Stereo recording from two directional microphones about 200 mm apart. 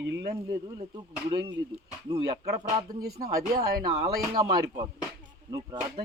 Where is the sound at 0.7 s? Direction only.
20° right (ahead or behind).